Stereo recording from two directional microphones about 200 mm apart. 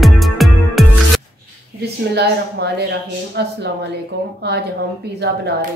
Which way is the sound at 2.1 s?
55° right (ahead or behind).